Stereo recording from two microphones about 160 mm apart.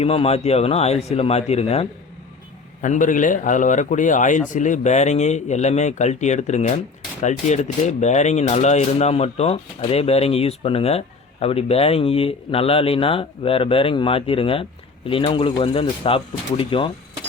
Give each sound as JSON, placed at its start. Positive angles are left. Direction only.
{"t": 0.0, "sound": "speech", "side_deg": 35}
{"t": 2.8, "sound": "speech", "side_deg": 50}